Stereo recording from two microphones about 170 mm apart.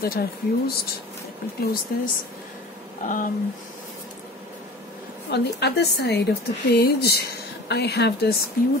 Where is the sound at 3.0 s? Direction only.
50° left (ahead or behind).